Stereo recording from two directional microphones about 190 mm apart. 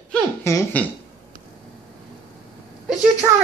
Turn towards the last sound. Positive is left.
turn(degrees=-15)  # may be behind; listen again after turning